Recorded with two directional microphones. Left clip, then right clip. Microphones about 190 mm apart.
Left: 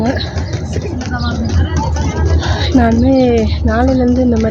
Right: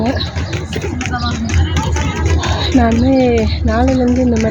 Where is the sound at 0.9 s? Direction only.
30° right (ahead or behind).